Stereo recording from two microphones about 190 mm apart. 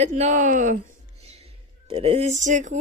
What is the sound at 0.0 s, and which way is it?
Speech, 35° right (ahead or behind).